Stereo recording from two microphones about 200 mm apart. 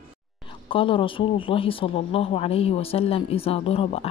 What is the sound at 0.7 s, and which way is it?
A woman's voice, 25° left (ahead or behind).